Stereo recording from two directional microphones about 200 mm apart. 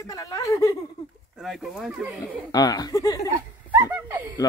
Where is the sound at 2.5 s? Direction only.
20° left (ahead or behind).